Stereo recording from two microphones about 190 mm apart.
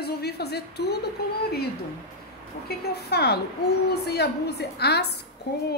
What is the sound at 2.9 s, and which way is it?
Speech, 60° left (ahead or behind).